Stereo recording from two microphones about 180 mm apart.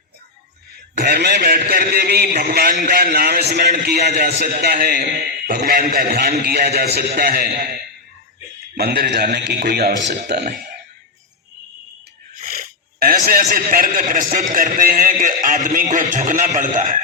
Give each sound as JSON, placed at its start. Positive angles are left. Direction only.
{"t": 0.9, "sound": "a man's voice", "side_deg": -65}
{"t": 12.4, "sound": "speech", "side_deg": -55}